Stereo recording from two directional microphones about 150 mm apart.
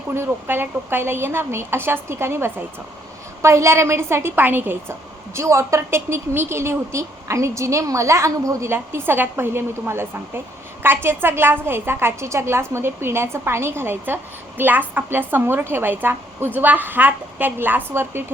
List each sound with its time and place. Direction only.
0.1 s a woman's voice: 15° right (ahead or behind)